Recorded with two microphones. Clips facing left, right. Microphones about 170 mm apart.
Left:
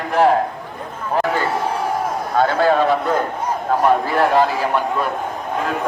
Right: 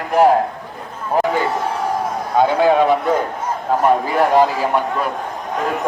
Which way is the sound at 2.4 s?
15° right (ahead or behind).